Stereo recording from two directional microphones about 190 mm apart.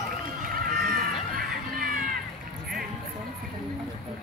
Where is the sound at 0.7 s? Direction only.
50° right (ahead or behind).